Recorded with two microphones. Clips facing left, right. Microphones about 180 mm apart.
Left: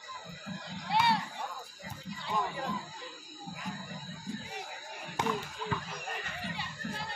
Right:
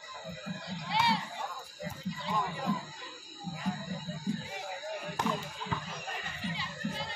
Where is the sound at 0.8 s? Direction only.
55° left (ahead or behind).